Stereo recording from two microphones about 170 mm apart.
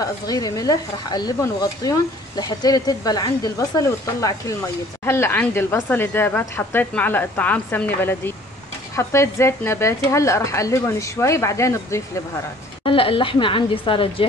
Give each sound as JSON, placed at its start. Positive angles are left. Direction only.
{"t": 0.0, "sound": "a woman's voice", "side_deg": 20}
{"t": 12.8, "sound": "speech", "side_deg": 30}